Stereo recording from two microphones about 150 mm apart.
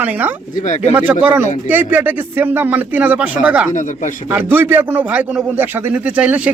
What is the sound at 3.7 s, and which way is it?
Speech, 55° left (ahead or behind).